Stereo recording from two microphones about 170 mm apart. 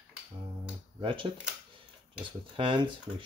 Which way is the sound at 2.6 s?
25° right (ahead or behind).